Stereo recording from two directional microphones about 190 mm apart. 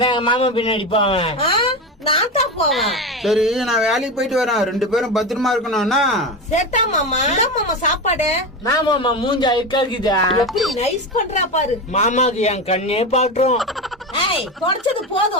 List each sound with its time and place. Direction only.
0.0 s a man's voice: 25° left (ahead or behind)
2.6 s speech: centre (ahead or behind)
6.5 s a woman's voice: 40° left (ahead or behind)
8.6 s a man's voice: 25° left (ahead or behind)
10.4 s speech: centre (ahead or behind)
10.8 s a woman's voice: 35° left (ahead or behind)